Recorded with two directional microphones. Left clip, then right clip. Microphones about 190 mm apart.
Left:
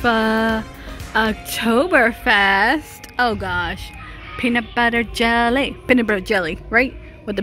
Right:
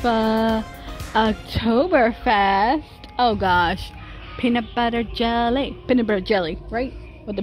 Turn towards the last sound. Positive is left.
turn(degrees=15)  # may be behind; listen again after turning